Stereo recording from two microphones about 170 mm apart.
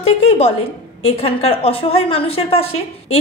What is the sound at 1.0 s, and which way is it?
A woman's voice, 35° left (ahead or behind).